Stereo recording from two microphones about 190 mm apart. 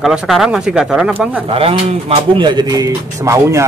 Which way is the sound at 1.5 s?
30° right (ahead or behind).